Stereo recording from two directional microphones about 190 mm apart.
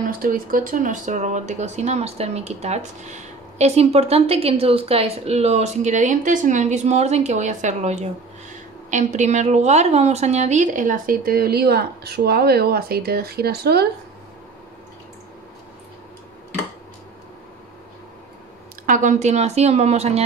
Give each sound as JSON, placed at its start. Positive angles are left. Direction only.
{"t": 0.0, "sound": "a woman's voice", "side_deg": -45}
{"t": 18.9, "sound": "speech", "side_deg": -40}